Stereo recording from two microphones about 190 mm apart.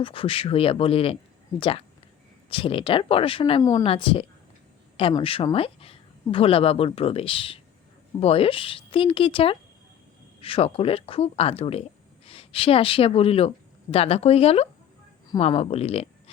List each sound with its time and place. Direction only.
0.0 s speech: 30° left (ahead or behind)
3.6 s speech: 20° left (ahead or behind)